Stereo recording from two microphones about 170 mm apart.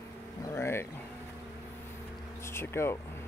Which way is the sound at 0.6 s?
15° left (ahead or behind).